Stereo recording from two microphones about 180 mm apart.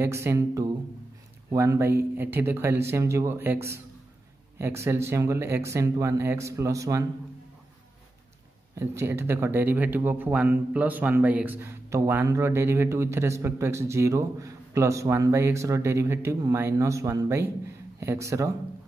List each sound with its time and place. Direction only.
0.0 s speech: 15° right (ahead or behind)
8.7 s speech: 15° right (ahead or behind)